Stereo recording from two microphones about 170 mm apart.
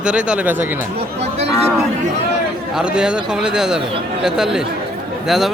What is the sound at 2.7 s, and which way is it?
Speech, 5° right (ahead or behind).